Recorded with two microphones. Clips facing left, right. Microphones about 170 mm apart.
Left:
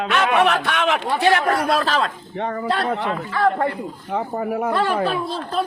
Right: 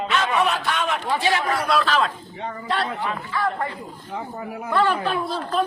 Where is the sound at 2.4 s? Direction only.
60° left (ahead or behind).